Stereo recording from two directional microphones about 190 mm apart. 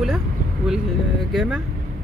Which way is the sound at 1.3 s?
5° right (ahead or behind).